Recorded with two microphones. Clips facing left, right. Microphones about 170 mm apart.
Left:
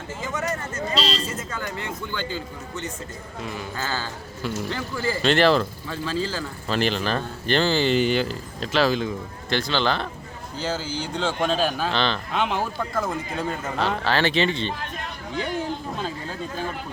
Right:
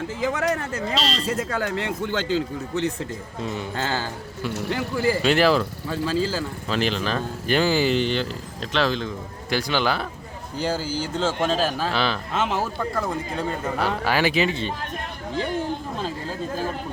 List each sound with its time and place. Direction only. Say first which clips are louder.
0.2 s speech: right 5 dB; 65° right (ahead or behind)
3.4 s speech: right 4 dB; 25° right (ahead or behind)
3.8 s speech: right 3 dB; 55° right (ahead or behind)
4.5 s speech: right 4 dB; 65° right (ahead or behind)
5.2 s a man's voice: left 3 dB; 5° right (ahead or behind)
7.9 s a man's voice: left 2 dB; 5° left (ahead or behind)
9.5 s a man's voice: even; 10° right (ahead or behind)
13.7 s speech: even; 10° right (ahead or behind)